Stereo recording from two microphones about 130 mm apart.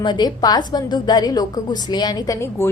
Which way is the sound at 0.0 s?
35° left (ahead or behind).